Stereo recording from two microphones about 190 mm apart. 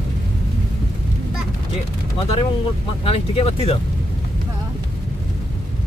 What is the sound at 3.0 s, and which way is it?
Speech, 30° left (ahead or behind).